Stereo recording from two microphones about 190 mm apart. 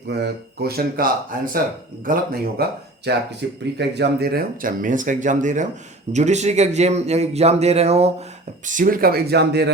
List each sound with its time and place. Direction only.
0.1 s a man's voice: 60° right (ahead or behind); by 8.1 s 35° right (ahead or behind)
8.6 s speech: 45° right (ahead or behind); by 9.7 s 60° right (ahead or behind)